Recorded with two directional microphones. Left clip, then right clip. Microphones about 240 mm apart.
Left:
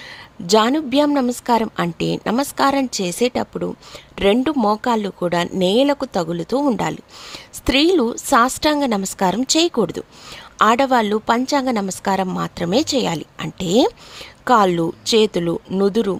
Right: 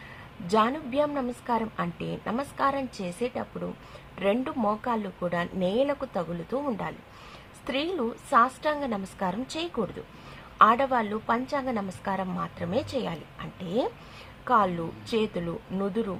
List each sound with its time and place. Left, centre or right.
0.4 s a woman's voice: left